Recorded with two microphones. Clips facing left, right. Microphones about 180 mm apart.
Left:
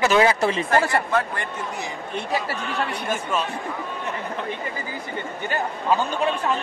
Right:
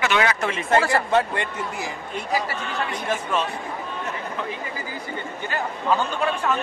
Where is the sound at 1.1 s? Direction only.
25° right (ahead or behind).